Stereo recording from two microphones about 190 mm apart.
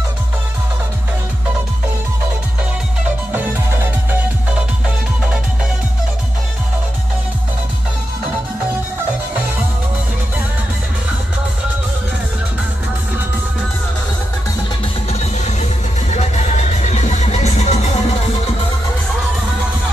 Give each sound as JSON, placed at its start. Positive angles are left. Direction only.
{"t": 3.7, "sound": "music", "side_deg": -10}
{"t": 15.0, "sound": "music", "side_deg": 35}